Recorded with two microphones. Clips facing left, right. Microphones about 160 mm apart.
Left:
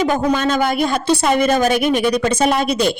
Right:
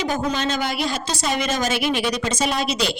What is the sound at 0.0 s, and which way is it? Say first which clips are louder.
Speech: left 6 dB; 55° left (ahead or behind).